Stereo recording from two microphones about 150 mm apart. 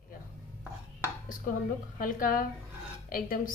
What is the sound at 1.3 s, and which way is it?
A woman's voice, 65° left (ahead or behind).